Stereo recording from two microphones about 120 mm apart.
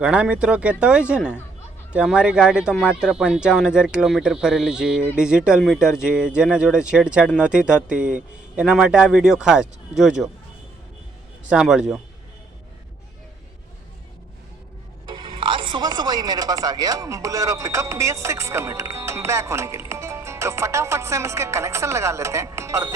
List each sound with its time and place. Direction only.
0.0 s speech: 10° right (ahead or behind)
11.4 s a man's voice: 5° right (ahead or behind)
15.1 s speech: 45° right (ahead or behind); by 23.0 s 25° right (ahead or behind)